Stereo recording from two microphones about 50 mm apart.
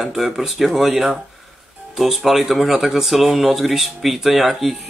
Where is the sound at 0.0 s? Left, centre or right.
Centre.